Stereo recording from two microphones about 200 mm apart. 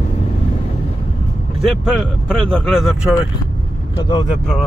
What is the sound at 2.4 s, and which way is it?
Speech, centre (ahead or behind).